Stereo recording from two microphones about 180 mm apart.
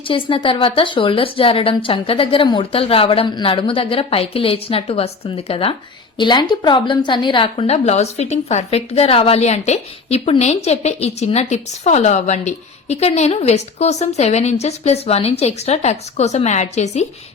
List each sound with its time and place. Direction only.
0.1 s a woman's voice: 30° left (ahead or behind)